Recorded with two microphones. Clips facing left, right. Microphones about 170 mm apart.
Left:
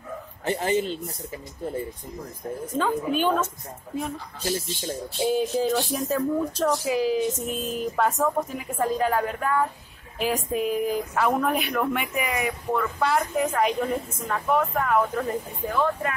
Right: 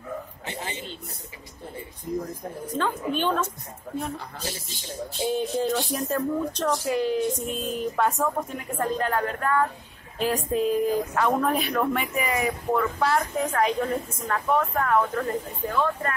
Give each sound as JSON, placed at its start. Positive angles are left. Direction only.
{"t": 0.5, "sound": "speech", "side_deg": 45}
{"t": 2.8, "sound": "speech", "side_deg": 10}
{"t": 5.3, "sound": "a woman's voice", "side_deg": 5}